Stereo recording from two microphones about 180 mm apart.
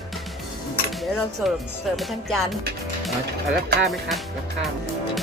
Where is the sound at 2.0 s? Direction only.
Centre (ahead or behind).